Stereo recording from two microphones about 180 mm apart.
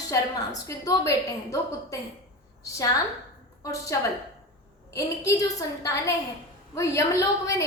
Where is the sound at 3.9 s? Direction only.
15° left (ahead or behind).